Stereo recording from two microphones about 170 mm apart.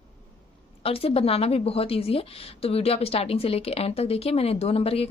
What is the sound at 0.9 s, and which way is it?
A woman's voice, 35° left (ahead or behind).